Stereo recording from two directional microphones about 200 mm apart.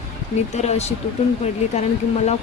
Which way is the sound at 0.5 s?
35° left (ahead or behind).